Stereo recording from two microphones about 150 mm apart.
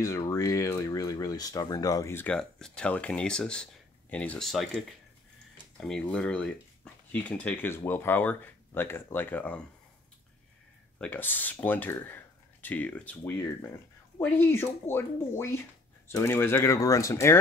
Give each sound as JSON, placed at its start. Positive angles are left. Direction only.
{"t": 0.0, "sound": "speech", "side_deg": 25}
{"t": 2.3, "sound": "speech", "side_deg": 5}
{"t": 11.0, "sound": "speech", "side_deg": 10}